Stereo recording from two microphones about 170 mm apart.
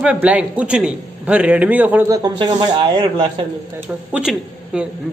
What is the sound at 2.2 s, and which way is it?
Speech, 25° right (ahead or behind).